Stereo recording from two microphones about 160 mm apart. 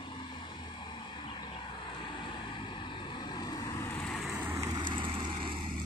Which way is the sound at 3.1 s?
25° left (ahead or behind).